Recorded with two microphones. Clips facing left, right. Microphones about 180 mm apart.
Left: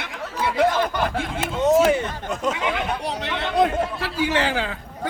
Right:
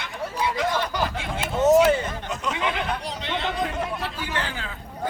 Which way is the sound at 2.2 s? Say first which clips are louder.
Left 5 dB; 60° left (ahead or behind).